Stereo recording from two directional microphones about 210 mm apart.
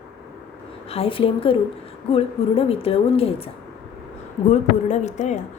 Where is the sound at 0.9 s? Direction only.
25° left (ahead or behind).